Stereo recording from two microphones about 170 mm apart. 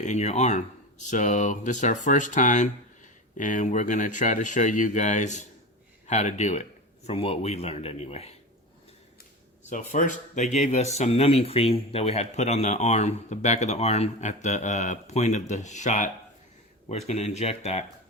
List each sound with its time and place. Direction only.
0.0 s speech: 45° left (ahead or behind)
9.6 s speech: 50° left (ahead or behind)